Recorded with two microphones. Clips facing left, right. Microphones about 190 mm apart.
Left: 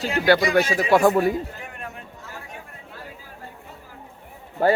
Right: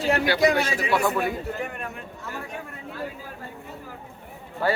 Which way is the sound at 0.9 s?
40° left (ahead or behind).